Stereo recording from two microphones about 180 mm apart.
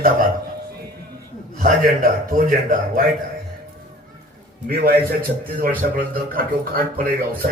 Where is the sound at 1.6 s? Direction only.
50° right (ahead or behind).